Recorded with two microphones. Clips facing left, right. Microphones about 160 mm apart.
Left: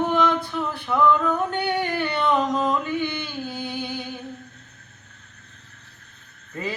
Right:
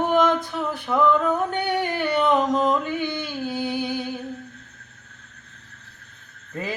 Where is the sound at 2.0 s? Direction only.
40° right (ahead or behind).